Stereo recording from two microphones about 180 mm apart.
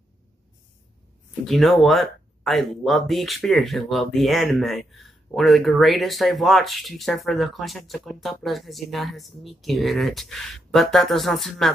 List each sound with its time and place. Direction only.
1.4 s speech: centre (ahead or behind)